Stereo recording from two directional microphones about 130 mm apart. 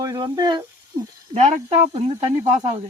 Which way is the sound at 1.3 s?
55° right (ahead or behind).